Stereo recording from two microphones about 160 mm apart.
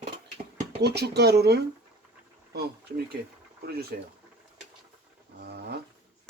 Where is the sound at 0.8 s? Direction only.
90° right.